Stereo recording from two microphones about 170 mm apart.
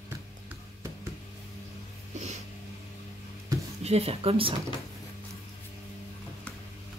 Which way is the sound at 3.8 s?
35° right (ahead or behind).